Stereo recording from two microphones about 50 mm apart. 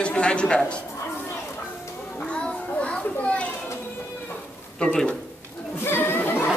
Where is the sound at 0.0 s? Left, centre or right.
Left.